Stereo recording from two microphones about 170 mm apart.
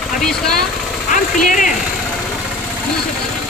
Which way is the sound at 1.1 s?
50° left (ahead or behind).